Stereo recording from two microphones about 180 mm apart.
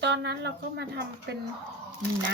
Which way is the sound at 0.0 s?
70° right (ahead or behind).